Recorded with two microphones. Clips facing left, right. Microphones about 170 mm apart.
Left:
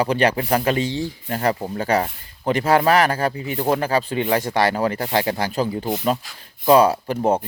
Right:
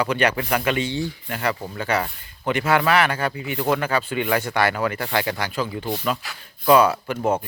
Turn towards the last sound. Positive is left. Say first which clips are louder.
# left 3 dB
turn(degrees=30)  # may be behind; listen again after turning